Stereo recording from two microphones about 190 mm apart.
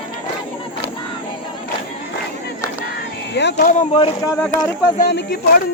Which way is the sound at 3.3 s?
65° left (ahead or behind).